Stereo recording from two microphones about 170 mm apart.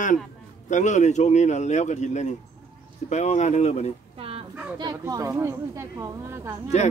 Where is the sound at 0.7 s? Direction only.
45° left (ahead or behind).